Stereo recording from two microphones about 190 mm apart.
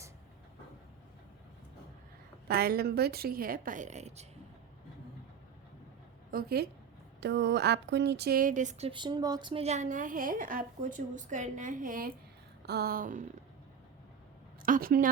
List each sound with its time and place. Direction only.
2.5 s a woman's voice: 55° right (ahead or behind); by 4.3 s 35° right (ahead or behind)
6.3 s a woman's voice: 55° right (ahead or behind)
7.2 s a woman's voice: 65° right (ahead or behind); by 8.9 s 40° right (ahead or behind)
8.9 s a woman's voice: 25° right (ahead or behind); by 13.2 s 45° right (ahead or behind)
14.6 s a woman's voice: 50° right (ahead or behind)